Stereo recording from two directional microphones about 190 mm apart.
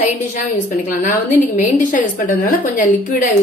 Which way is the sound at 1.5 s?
40° left (ahead or behind).